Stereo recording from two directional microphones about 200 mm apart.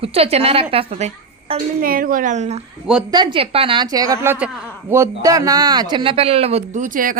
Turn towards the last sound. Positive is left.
turn(degrees=-40)  # may be behind; listen again after turning